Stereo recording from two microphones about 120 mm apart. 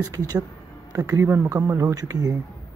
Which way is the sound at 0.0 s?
30° right (ahead or behind).